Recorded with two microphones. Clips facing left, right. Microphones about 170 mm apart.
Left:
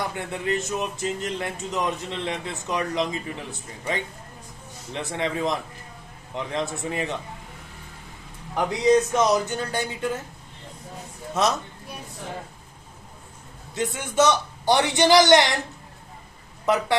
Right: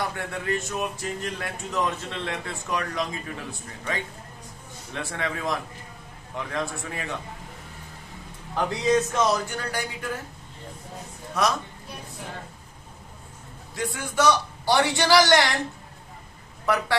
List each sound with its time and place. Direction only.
0.0 s speech: 20° left (ahead or behind)
4.9 s speech: 20° left (ahead or behind)
8.5 s speech: 15° left (ahead or behind)
11.4 s speech: 25° left (ahead or behind)
13.9 s speech: 20° left (ahead or behind)
16.6 s speech: 20° left (ahead or behind)